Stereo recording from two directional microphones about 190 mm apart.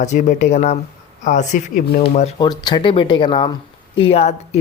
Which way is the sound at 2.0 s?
30° left (ahead or behind).